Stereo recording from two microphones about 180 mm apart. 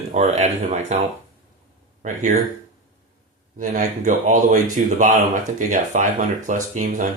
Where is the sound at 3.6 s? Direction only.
45° right (ahead or behind).